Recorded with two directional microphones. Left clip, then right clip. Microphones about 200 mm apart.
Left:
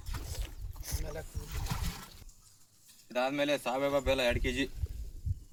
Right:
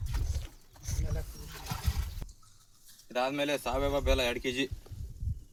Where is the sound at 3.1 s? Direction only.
10° right (ahead or behind).